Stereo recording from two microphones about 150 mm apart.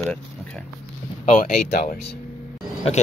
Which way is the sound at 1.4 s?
85° left.